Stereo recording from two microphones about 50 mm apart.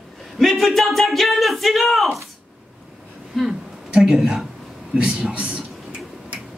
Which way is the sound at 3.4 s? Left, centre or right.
Centre.